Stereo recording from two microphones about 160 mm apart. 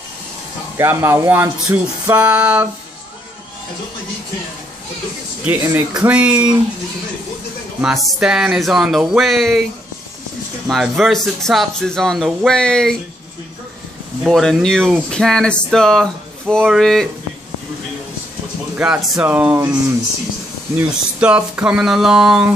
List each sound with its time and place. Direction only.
0.7 s speech: 15° right (ahead or behind)
5.5 s speech: 10° right (ahead or behind)
7.8 s speech: centre (ahead or behind)
10.7 s speech: centre (ahead or behind)
14.2 s speech: centre (ahead or behind)
18.8 s speech: 5° right (ahead or behind)
19.2 s speech: 10° right (ahead or behind)
20.9 s speech: 5° right (ahead or behind)